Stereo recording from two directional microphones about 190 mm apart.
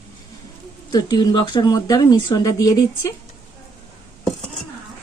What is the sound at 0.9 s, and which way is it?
Speech, 20° left (ahead or behind).